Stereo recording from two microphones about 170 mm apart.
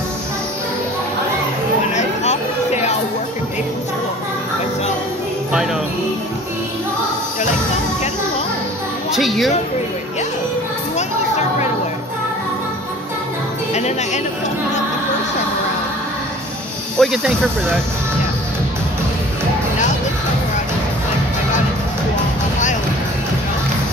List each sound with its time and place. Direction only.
2.0 s a sound: 40° left (ahead or behind)
9.1 s speech: centre (ahead or behind)
11.0 s music: 40° left (ahead or behind)
13.7 s speech: 40° left (ahead or behind)
17.0 s speech: centre (ahead or behind)